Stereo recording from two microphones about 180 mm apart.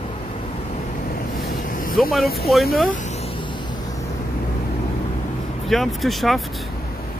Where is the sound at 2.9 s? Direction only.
40° left (ahead or behind); by 4.0 s 25° left (ahead or behind).